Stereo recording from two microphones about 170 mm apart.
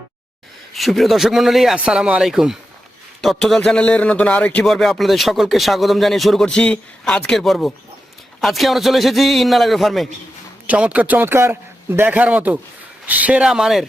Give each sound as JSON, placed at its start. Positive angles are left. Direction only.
{"t": 0.7, "sound": "a man's voice", "side_deg": 0}